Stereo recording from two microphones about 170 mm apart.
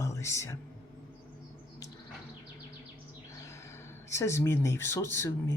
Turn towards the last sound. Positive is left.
turn(degrees=15)  # may be behind; listen again after turning